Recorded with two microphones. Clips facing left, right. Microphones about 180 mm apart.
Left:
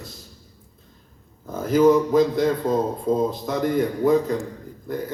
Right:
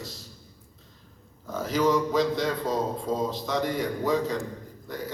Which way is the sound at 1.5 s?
50° left (ahead or behind).